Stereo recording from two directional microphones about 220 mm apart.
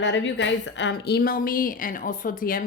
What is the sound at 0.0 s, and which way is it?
A woman's voice, 55° left (ahead or behind).